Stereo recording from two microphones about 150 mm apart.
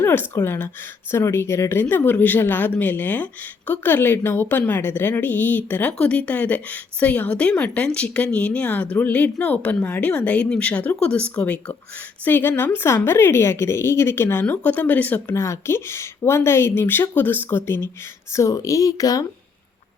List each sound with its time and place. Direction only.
0.0 s a woman's voice: 15° left (ahead or behind)